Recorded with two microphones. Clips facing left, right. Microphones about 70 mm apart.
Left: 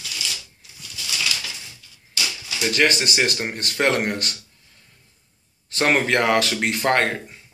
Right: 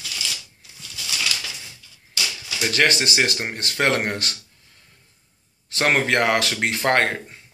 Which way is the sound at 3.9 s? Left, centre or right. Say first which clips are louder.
Left 1 dB; right.